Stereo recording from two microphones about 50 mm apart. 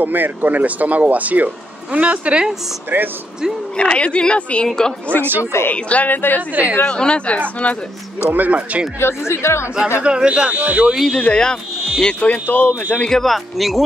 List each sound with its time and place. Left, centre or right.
0.0 s speech: right
3.7 s speech: left
4.6 s speech: centre
5.4 s speech: left
5.7 s speech: left
6.5 s speech: right
6.8 s speech: centre
8.3 s speech: right
9.0 s speech: left
10.0 s speech: centre
10.5 s speech: right
11.1 s speech: centre
13.1 s speech: centre